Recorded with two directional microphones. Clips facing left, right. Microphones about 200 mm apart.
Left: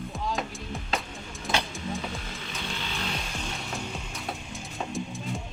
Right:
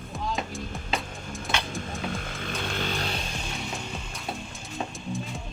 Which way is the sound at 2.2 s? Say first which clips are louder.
Right 4 dB; 55° right (ahead or behind).